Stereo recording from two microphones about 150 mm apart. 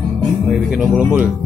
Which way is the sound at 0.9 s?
10° right (ahead or behind).